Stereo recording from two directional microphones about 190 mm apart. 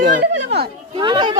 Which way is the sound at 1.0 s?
25° right (ahead or behind).